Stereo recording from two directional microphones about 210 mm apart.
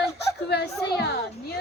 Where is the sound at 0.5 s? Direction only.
50° left (ahead or behind).